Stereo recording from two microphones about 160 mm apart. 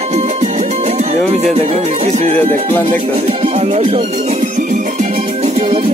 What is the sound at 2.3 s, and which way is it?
Speech, 10° left (ahead or behind).